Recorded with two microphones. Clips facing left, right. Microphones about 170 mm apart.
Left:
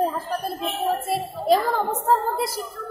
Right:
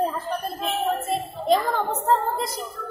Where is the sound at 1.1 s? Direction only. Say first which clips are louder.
Left 2 dB; 5° left (ahead or behind).